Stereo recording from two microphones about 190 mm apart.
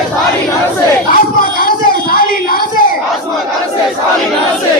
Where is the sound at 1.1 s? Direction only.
50° left (ahead or behind).